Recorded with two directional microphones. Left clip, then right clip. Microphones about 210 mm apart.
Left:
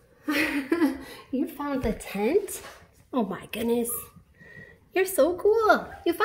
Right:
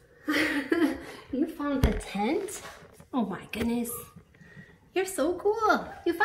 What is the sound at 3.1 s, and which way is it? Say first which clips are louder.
Speech: left 3 dB; 25° left (ahead or behind).